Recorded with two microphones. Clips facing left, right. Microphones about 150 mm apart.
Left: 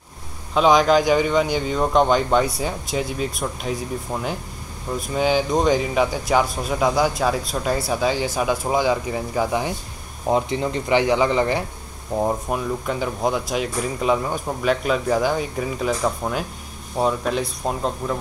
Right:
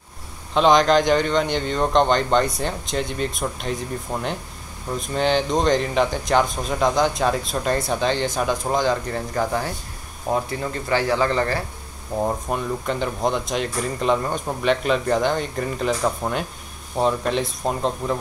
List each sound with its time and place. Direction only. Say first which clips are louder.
0.6 s speech: even; 5° left (ahead or behind)
12.2 s speech: left 1 dB; 5° left (ahead or behind)